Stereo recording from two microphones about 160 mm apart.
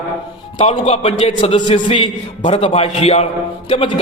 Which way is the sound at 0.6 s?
40° left (ahead or behind).